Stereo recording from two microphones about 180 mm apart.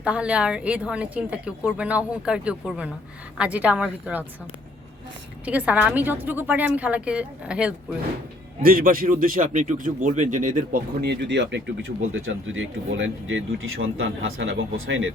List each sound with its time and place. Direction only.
0.0 s speech: 5° right (ahead or behind)
5.5 s speech: 10° right (ahead or behind)
8.6 s a man's voice: 50° right (ahead or behind)
11.0 s speech: 70° right (ahead or behind)
12.1 s speech: 90° right